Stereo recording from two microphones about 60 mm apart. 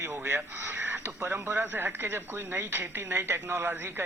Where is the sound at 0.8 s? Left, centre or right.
Right.